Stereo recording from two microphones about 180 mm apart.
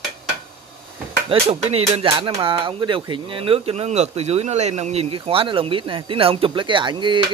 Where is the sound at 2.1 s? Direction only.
25° right (ahead or behind).